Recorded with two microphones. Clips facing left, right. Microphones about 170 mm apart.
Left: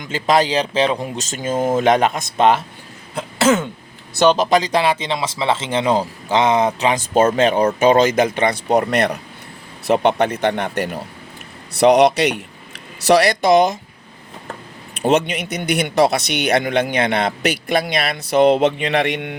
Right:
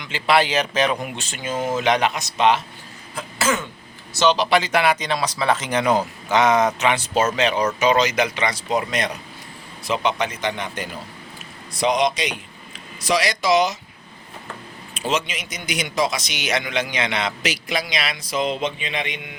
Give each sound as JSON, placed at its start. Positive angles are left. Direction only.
{"t": 0.0, "sound": "speech", "side_deg": 45}
{"t": 4.2, "sound": "speech", "side_deg": 50}
{"t": 7.0, "sound": "speech", "side_deg": 50}
{"t": 14.9, "sound": "speech", "side_deg": 60}